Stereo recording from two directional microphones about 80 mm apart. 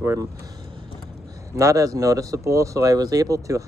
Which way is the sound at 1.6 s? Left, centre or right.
Right.